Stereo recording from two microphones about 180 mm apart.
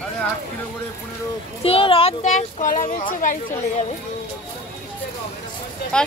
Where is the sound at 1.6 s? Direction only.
30° left (ahead or behind).